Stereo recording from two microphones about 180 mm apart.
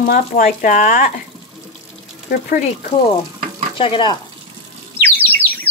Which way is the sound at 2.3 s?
50° left (ahead or behind).